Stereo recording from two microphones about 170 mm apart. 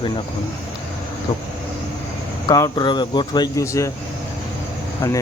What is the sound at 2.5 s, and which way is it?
A man's voice, 25° left (ahead or behind).